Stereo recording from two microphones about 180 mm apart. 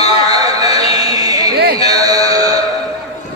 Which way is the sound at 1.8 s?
20° right (ahead or behind).